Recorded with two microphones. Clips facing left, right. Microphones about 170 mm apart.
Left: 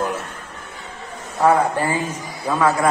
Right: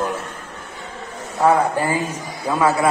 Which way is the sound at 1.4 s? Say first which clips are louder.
Even; 5° right (ahead or behind).